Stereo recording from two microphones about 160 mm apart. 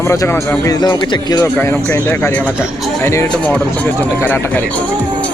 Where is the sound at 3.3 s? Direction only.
10° left (ahead or behind).